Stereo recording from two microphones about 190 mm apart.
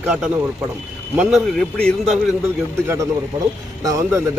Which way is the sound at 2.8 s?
15° right (ahead or behind).